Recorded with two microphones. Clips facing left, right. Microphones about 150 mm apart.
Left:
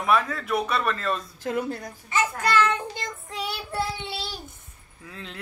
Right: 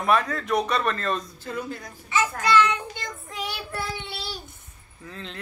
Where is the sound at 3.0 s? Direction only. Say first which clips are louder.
Left 1 dB; 30° left (ahead or behind).